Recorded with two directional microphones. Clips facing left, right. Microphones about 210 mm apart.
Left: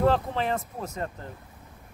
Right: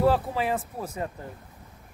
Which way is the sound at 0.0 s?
5° right (ahead or behind).